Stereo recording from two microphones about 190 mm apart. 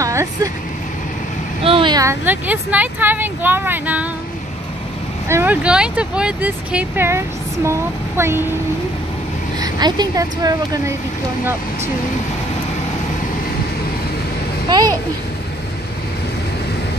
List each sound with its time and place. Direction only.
0.0 s vehicle: 15° right (ahead or behind)
1.6 s speech: 30° right (ahead or behind); by 4.1 s 10° right (ahead or behind)
5.3 s speech: 10° right (ahead or behind)
9.6 s a woman's voice: 20° right (ahead or behind)